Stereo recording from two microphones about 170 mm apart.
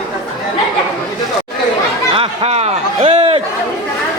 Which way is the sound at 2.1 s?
35° right (ahead or behind).